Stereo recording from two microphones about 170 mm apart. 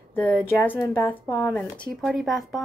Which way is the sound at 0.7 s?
25° left (ahead or behind).